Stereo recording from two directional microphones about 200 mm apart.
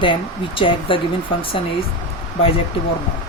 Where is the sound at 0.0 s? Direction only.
25° left (ahead or behind).